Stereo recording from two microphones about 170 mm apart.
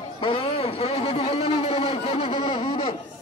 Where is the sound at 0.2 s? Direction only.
30° left (ahead or behind).